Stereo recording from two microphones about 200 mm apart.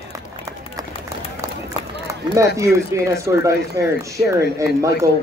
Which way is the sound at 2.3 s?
15° right (ahead or behind).